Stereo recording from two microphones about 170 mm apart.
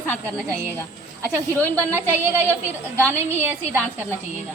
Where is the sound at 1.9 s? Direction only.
15° right (ahead or behind).